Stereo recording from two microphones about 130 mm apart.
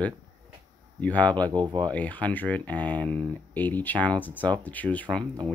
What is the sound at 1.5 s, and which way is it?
Speech, 35° right (ahead or behind).